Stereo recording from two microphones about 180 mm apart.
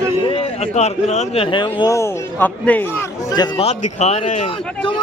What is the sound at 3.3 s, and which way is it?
Speech, 20° left (ahead or behind).